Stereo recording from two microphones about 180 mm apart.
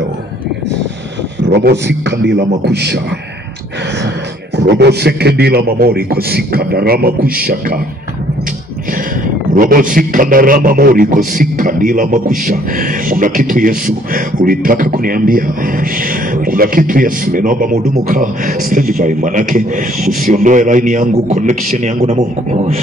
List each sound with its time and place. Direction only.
1.4 s a man's voice: 65° right (ahead or behind)
4.6 s a man's voice: 65° right (ahead or behind)
9.5 s a man's voice: 50° right (ahead or behind)